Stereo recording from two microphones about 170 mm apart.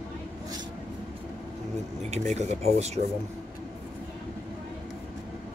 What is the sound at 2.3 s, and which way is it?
Speech, 40° right (ahead or behind).